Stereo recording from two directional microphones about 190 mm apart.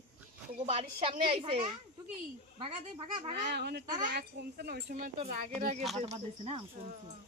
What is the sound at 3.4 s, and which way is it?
A child's voice, 60° right (ahead or behind).